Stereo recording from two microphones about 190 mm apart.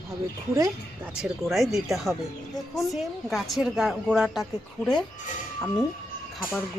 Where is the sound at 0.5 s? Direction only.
15° right (ahead or behind).